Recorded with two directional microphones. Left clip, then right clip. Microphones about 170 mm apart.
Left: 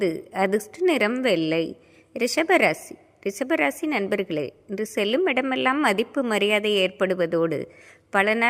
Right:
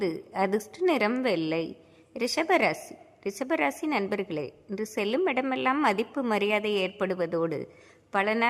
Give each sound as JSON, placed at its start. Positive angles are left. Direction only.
{"t": 0.0, "sound": "a woman's voice", "side_deg": 20}